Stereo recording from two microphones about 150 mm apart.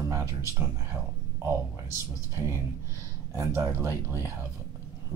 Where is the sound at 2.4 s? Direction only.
20° right (ahead or behind).